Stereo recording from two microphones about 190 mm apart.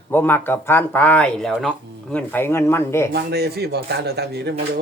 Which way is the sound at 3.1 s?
55° right (ahead or behind).